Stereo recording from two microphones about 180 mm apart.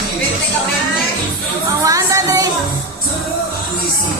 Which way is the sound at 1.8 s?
20° right (ahead or behind).